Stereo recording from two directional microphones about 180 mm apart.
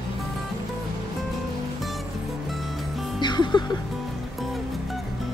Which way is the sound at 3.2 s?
25° left (ahead or behind).